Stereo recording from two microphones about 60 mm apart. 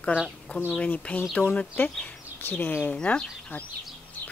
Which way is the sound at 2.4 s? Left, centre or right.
Left.